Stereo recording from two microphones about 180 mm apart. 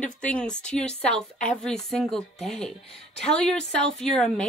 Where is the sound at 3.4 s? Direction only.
5° left (ahead or behind).